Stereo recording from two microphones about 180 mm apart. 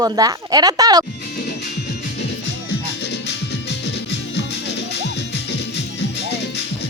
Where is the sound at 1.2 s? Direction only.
55° left (ahead or behind).